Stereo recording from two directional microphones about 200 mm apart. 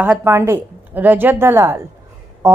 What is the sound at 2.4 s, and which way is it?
Music, 15° right (ahead or behind).